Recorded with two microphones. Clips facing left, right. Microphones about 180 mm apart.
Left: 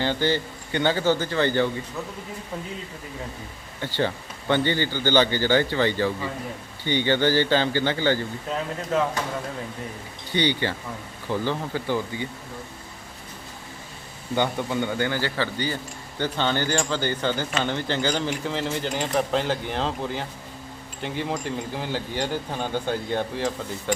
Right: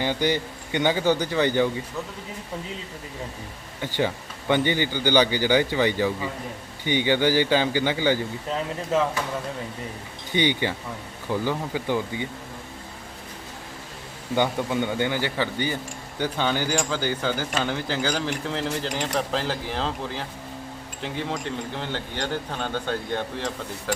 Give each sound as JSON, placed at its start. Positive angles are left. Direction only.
{"t": 0.0, "sound": "speech", "side_deg": -15}
{"t": 3.8, "sound": "speech", "side_deg": -15}
{"t": 10.3, "sound": "speech", "side_deg": -15}
{"t": 14.3, "sound": "speech", "side_deg": -15}